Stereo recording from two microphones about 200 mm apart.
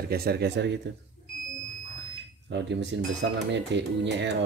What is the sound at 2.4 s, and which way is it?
Speech, 60° right (ahead or behind).